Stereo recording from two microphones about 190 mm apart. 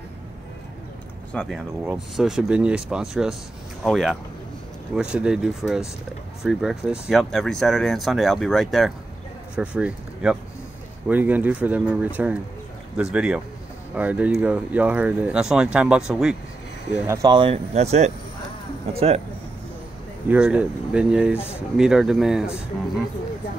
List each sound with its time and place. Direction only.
1.3 s speech: 5° left (ahead or behind); by 19.2 s 30° right (ahead or behind)
20.2 s speech: 5° right (ahead or behind)